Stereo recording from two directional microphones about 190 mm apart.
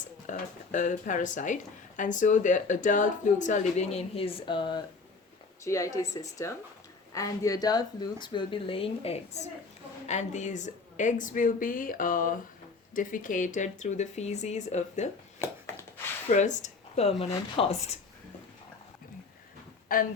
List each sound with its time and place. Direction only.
0.0 s a woman's voice: 40° left (ahead or behind)
15.7 s a sound: 15° left (ahead or behind)
16.3 s speech: 40° left (ahead or behind)
19.9 s a woman's voice: 50° left (ahead or behind)